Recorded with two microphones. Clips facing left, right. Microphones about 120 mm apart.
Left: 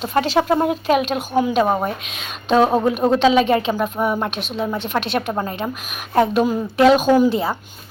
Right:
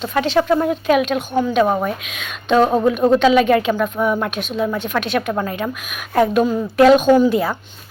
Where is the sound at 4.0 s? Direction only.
25° left (ahead or behind).